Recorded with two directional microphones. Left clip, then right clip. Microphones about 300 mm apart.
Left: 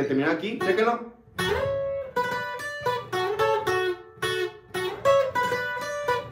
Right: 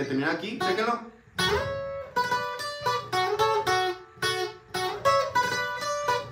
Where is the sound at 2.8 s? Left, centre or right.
Centre.